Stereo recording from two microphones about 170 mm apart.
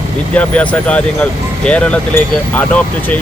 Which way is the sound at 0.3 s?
10° left (ahead or behind).